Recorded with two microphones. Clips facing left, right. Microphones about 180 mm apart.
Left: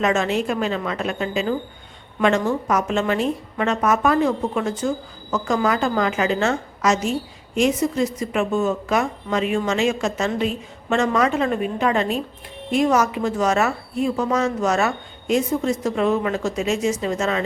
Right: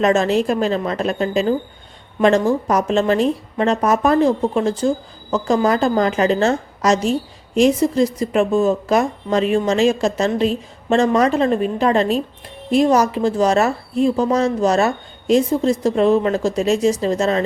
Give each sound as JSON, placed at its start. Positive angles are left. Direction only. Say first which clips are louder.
{"t": 0.0, "sound": "speech", "louder": "right 5 dB", "side_deg": -35}